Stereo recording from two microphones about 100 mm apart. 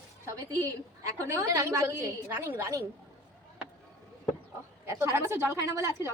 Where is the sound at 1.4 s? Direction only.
30° right (ahead or behind).